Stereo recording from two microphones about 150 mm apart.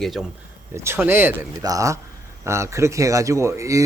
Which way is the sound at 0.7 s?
15° right (ahead or behind).